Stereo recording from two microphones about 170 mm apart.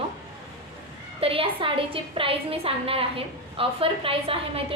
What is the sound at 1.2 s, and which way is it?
A woman's voice, 35° right (ahead or behind).